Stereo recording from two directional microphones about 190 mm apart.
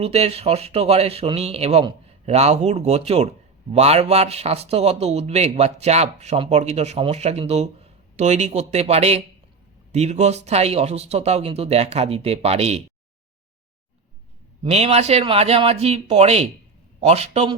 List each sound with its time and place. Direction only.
0.0 s speech: 30° right (ahead or behind)
14.6 s speech: 35° right (ahead or behind)